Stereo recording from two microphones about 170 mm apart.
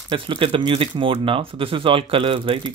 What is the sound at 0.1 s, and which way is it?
Speech, 30° right (ahead or behind).